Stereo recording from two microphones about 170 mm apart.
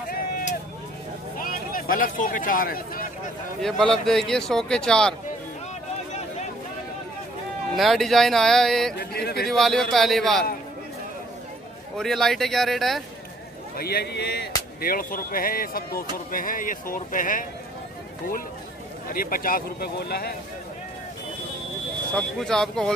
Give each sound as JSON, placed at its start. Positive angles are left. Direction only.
{"t": 0.1, "sound": "vehicle", "side_deg": 55}
{"t": 1.4, "sound": "a man's voice", "side_deg": 55}
{"t": 3.6, "sound": "a man's voice", "side_deg": 5}
{"t": 7.7, "sound": "a man's voice", "side_deg": 0}
{"t": 9.1, "sound": "speech", "side_deg": 65}
{"t": 9.4, "sound": "a man's voice", "side_deg": 0}
{"t": 12.0, "sound": "a man's voice", "side_deg": 0}
{"t": 13.7, "sound": "a man's voice", "side_deg": 65}
{"t": 14.8, "sound": "speech", "side_deg": 55}
{"t": 19.0, "sound": "speech", "side_deg": 55}
{"t": 22.1, "sound": "a man's voice", "side_deg": 5}